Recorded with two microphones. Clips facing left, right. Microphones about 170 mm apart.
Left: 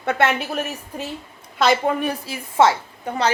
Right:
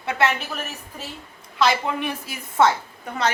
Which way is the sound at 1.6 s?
50° left (ahead or behind).